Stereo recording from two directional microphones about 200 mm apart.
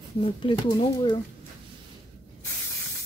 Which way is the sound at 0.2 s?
25° left (ahead or behind).